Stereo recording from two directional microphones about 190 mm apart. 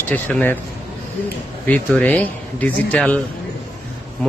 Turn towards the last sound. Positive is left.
turn(degrees=5)  # may be behind; listen again after turning